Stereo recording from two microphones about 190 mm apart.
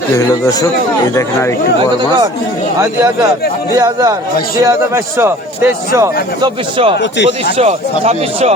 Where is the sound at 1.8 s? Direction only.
25° right (ahead or behind).